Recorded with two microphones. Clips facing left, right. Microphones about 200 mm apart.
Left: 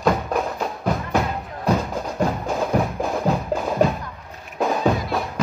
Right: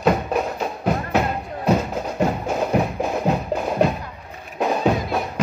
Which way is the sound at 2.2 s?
10° right (ahead or behind).